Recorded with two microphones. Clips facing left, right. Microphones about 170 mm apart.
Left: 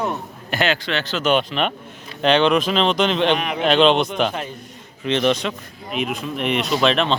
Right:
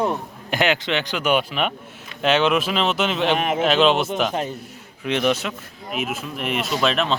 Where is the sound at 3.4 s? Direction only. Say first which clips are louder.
Right 3 dB; 45° right (ahead or behind).